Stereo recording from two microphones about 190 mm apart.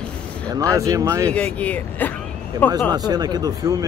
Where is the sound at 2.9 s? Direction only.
20° right (ahead or behind).